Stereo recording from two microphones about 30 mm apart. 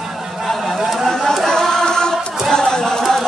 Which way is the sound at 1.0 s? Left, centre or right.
Centre.